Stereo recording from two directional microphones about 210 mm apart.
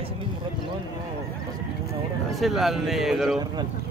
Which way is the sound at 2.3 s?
Centre (ahead or behind).